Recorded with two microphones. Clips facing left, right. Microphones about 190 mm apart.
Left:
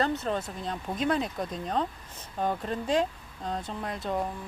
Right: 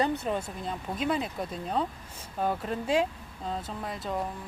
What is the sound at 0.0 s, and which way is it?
Speech, 15° right (ahead or behind).